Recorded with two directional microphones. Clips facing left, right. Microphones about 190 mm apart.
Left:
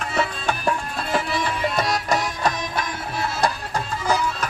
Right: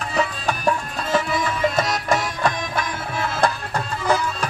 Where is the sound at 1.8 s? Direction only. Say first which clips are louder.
Right 1 dB; 50° right (ahead or behind).